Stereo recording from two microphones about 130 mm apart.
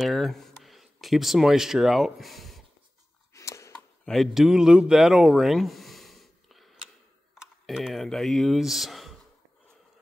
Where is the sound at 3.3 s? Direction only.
25° left (ahead or behind).